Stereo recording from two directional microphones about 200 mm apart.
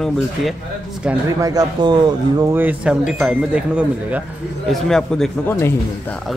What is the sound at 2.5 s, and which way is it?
A man's voice, 10° right (ahead or behind).